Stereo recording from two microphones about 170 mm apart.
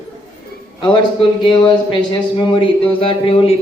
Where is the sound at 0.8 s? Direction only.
30° left (ahead or behind).